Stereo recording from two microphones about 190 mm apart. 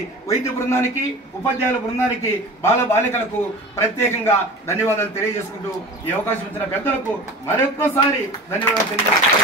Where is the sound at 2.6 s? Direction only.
15° left (ahead or behind).